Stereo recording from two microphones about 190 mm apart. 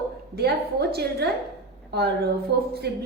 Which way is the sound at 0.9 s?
55° right (ahead or behind).